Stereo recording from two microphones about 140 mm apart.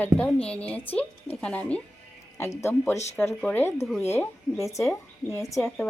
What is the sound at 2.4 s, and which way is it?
Speech, 20° left (ahead or behind).